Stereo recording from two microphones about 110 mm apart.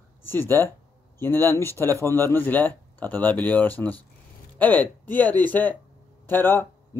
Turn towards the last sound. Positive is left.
turn(degrees=20)  # may be behind; listen again after turning